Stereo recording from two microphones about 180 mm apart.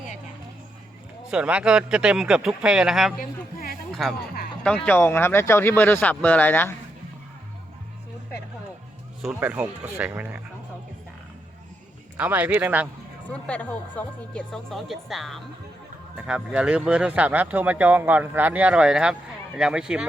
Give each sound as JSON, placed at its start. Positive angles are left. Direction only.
{"t": 1.3, "sound": "speech", "side_deg": -5}
{"t": 3.2, "sound": "a man's voice", "side_deg": 55}
{"t": 4.0, "sound": "speech", "side_deg": 0}
{"t": 4.9, "sound": "speech", "side_deg": 10}
{"t": 9.3, "sound": "speech", "side_deg": -10}
{"t": 12.1, "sound": "speech", "side_deg": -10}
{"t": 13.2, "sound": "speech", "side_deg": 10}